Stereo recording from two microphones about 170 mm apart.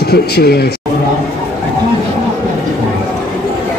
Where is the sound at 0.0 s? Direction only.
70° left (ahead or behind).